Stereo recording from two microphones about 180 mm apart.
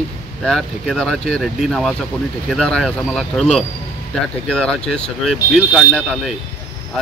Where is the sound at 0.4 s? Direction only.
Centre (ahead or behind).